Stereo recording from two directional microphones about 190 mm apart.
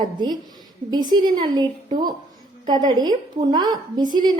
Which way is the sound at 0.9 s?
20° right (ahead or behind).